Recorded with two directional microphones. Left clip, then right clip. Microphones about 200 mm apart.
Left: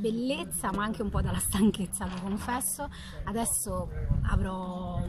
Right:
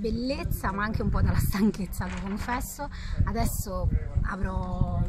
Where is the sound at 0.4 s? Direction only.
Centre (ahead or behind).